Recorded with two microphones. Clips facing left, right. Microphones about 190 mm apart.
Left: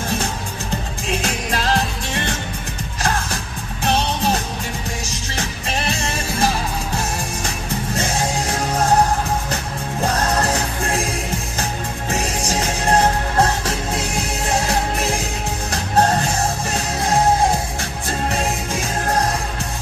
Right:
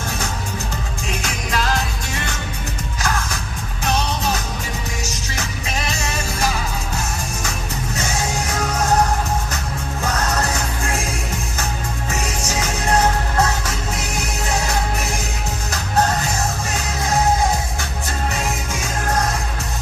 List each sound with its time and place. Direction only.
1.2 s music: 30° left (ahead or behind)
3.8 s music: 30° left (ahead or behind)
12.1 s music: 30° left (ahead or behind)
15.7 s music: 30° left (ahead or behind)
18.3 s music: 30° left (ahead or behind)